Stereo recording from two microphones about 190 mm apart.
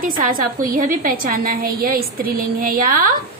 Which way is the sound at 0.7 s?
45° right (ahead or behind).